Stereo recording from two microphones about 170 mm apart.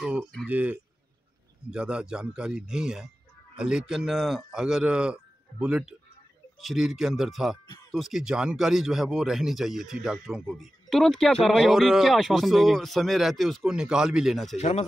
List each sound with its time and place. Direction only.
0.0 s speech: 5° right (ahead or behind)
1.7 s speech: 5° right (ahead or behind)
7.6 s music: 25° left (ahead or behind)
7.9 s speech: centre (ahead or behind)
14.6 s speech: 40° left (ahead or behind)